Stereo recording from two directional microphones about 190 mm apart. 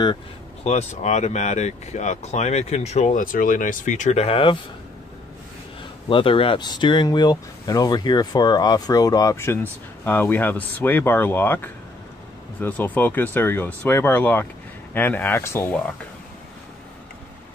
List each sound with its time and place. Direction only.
0.7 s speech: 35° left (ahead or behind)
6.0 s speech: 25° left (ahead or behind)